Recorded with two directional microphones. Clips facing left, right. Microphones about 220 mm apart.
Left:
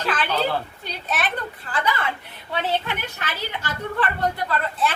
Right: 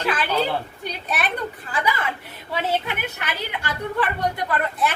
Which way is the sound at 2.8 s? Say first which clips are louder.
Right 1 dB; 15° right (ahead or behind).